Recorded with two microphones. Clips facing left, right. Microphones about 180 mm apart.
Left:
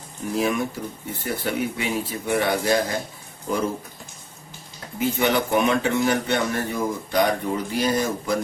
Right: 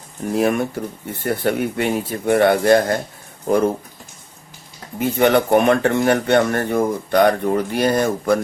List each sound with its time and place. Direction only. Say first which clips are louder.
0.3 s speech: right 5 dB; 60° right (ahead or behind)
4.9 s speech: right 6 dB; 55° right (ahead or behind)